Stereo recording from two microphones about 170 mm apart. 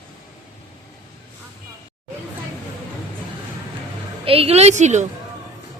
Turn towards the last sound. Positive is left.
turn(degrees=-45)  # may be behind; listen again after turning